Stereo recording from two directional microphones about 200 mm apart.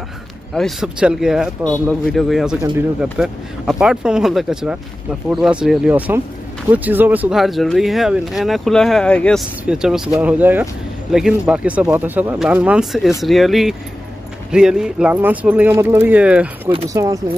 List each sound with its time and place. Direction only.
0.6 s speech: centre (ahead or behind)
16.9 s speech: 15° right (ahead or behind)